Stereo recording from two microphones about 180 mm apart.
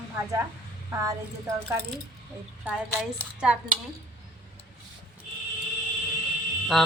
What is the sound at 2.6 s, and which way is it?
Speech, 5° right (ahead or behind).